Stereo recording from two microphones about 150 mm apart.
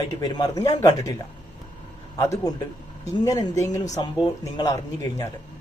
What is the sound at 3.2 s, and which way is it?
A man's voice, 25° left (ahead or behind).